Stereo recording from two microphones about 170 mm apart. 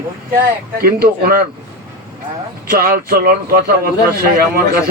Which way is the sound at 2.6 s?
60° right (ahead or behind).